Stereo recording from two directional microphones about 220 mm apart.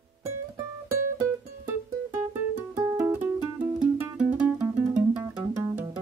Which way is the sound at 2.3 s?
15° right (ahead or behind).